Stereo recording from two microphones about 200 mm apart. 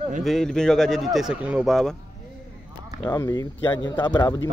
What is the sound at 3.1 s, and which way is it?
Speech, 15° left (ahead or behind).